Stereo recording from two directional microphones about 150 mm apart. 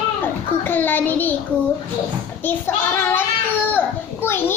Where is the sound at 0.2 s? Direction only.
10° left (ahead or behind).